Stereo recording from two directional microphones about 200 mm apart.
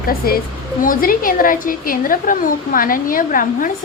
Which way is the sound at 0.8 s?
45° left (ahead or behind).